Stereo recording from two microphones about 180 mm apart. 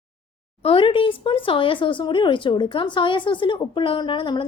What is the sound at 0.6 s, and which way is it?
A child's voice, 30° left (ahead or behind).